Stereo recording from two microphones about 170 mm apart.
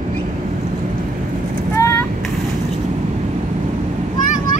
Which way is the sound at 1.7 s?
15° left (ahead or behind).